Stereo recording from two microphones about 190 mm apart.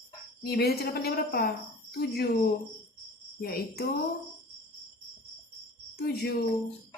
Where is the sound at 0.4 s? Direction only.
55° left (ahead or behind).